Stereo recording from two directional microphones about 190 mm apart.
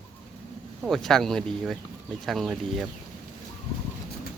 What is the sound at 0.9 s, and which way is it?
Speech, centre (ahead or behind).